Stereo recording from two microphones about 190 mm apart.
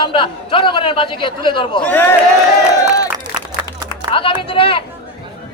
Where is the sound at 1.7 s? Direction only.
10° left (ahead or behind).